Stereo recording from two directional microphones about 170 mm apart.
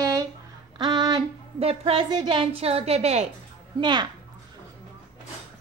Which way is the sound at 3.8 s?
25° right (ahead or behind).